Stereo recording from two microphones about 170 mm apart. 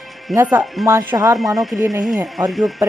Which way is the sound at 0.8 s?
20° right (ahead or behind).